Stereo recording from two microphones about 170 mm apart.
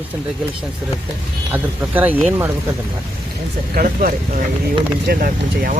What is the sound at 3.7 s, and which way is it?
Speech, 55° right (ahead or behind).